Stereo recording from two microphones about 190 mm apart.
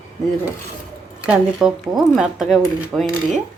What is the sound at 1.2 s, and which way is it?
Speech, 5° right (ahead or behind).